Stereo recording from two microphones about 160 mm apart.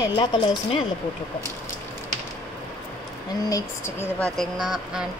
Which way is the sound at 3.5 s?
20° left (ahead or behind).